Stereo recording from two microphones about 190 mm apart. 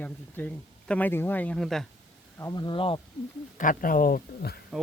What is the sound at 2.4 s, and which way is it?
Speech, 20° left (ahead or behind).